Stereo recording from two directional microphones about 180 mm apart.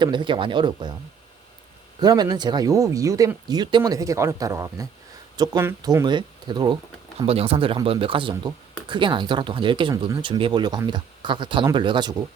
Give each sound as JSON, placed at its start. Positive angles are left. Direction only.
{"t": 0.0, "sound": "speech", "side_deg": -25}
{"t": 2.0, "sound": "speech", "side_deg": -20}